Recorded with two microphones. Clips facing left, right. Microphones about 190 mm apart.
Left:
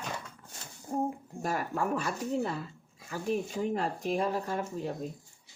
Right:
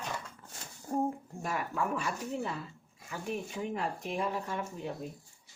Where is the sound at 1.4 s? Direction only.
40° left (ahead or behind).